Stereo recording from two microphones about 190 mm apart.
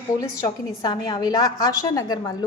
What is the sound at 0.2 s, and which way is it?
A woman's voice, 20° left (ahead or behind).